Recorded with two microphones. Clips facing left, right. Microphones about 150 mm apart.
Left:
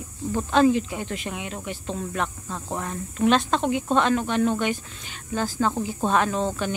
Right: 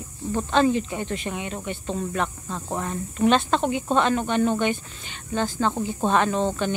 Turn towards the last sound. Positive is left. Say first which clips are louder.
# right 2 dB
turn(degrees=0)  # may be behind; listen again after turning